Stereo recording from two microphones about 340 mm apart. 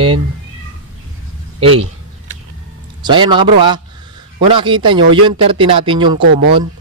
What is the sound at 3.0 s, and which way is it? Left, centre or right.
Speech, centre.